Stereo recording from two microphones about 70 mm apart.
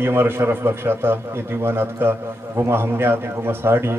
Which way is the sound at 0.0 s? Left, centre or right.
Right.